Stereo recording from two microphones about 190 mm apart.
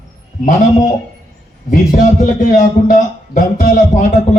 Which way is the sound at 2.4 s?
45° left (ahead or behind).